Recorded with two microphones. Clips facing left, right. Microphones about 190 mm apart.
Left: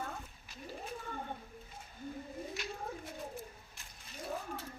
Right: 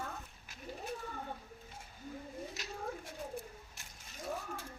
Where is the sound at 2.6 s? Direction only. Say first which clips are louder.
Left 4 dB; 40° right (ahead or behind).